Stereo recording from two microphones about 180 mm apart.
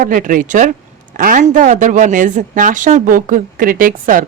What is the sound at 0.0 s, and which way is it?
Speech, 50° right (ahead or behind).